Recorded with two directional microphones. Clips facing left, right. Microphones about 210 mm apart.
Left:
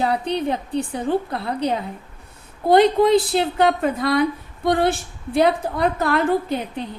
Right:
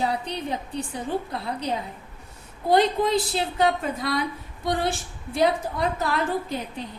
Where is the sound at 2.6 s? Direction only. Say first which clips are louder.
Left 6 dB; 60° left (ahead or behind).